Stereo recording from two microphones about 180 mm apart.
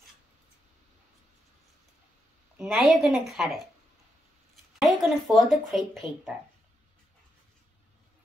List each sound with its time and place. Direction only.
2.6 s a woman's voice: centre (ahead or behind)
4.7 s speech: centre (ahead or behind)